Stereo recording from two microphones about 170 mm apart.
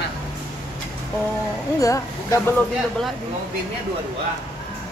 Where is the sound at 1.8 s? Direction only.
20° left (ahead or behind).